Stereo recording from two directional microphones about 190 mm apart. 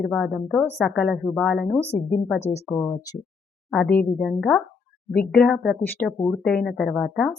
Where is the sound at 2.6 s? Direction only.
15° left (ahead or behind).